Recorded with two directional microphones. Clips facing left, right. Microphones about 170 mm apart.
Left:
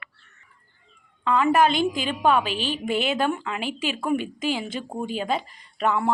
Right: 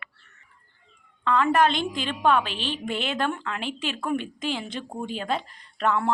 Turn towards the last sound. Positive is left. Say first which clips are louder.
# left 1 dB
turn(degrees=5)  # may be behind; listen again after turning